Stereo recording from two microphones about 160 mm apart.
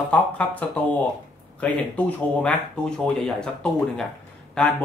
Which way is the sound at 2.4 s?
5° left (ahead or behind).